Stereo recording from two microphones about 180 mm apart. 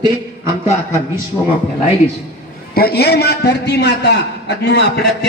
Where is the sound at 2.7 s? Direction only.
60° left (ahead or behind).